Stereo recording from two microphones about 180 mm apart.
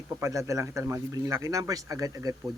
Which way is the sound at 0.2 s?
15° right (ahead or behind).